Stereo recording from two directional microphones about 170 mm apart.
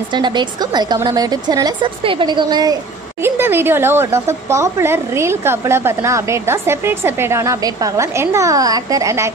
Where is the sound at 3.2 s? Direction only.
15° right (ahead or behind).